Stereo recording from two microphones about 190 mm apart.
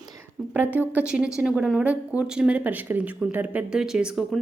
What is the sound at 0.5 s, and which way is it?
A woman's voice, 10° right (ahead or behind).